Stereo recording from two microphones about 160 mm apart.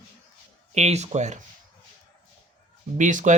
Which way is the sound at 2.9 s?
50° right (ahead or behind).